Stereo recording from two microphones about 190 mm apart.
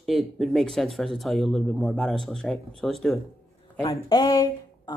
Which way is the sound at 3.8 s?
25° left (ahead or behind).